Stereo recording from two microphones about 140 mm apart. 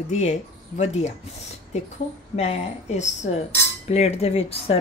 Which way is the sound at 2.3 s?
50° left (ahead or behind).